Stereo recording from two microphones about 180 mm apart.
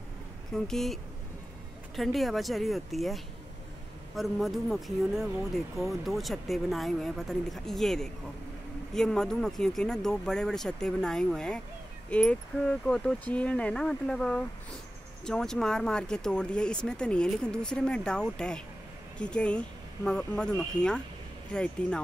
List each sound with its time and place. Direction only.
0.5 s speech: 5° left (ahead or behind)
2.0 s speech: centre (ahead or behind)